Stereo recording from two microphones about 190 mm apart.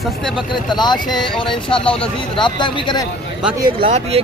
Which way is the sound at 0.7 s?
25° left (ahead or behind).